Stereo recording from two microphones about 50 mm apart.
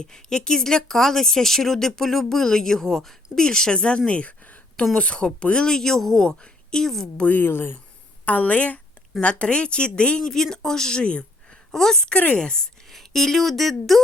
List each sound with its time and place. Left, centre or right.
0.0 s a woman's voice: centre
7.2 s speech: left
7.4 s speech: left
8.2 s speech: left
10.2 s a woman's voice: centre
11.7 s a woman's voice: centre
12.1 s a woman's voice: left
12.9 s speech: centre